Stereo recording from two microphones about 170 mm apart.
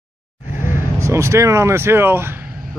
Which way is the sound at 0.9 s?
15° right (ahead or behind).